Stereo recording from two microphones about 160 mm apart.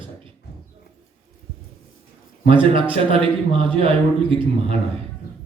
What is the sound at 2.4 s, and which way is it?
A man's voice, 35° right (ahead or behind).